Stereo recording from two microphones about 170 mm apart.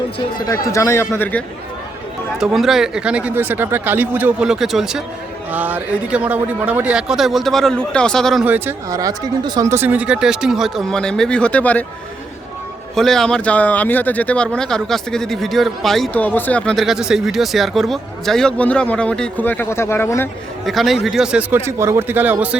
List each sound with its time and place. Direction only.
0.2 s speech: 25° left (ahead or behind)
2.4 s speech: centre (ahead or behind)
8.4 s speech: 10° right (ahead or behind); by 11.9 s 10° left (ahead or behind)
13.0 s speech: centre (ahead or behind)
20.7 s speech: centre (ahead or behind)